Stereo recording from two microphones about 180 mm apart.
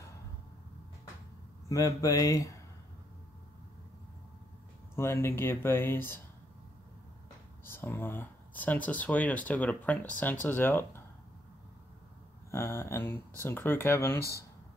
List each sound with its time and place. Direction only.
1.7 s speech: 20° left (ahead or behind)
4.9 s speech: 15° left (ahead or behind)
7.6 s speech: 15° left (ahead or behind)
12.4 s speech: 15° left (ahead or behind)